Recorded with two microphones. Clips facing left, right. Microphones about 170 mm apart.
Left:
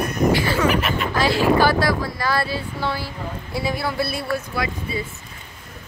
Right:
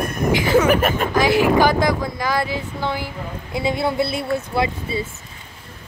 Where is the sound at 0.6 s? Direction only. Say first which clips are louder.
Right 3 dB; 50° right (ahead or behind).